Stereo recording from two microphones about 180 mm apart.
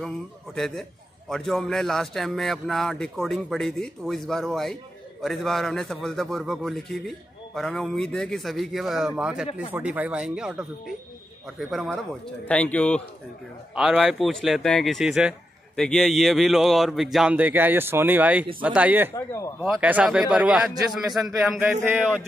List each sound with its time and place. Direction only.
0.6 s a man's voice: centre (ahead or behind)
19.1 s speech: 15° left (ahead or behind)
19.6 s a man's voice: 5° right (ahead or behind)